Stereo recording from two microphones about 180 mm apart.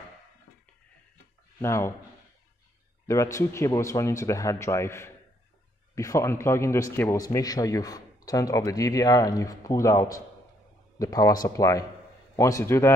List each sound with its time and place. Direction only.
1.6 s speech: 15° left (ahead or behind)
3.1 s speech: 15° left (ahead or behind)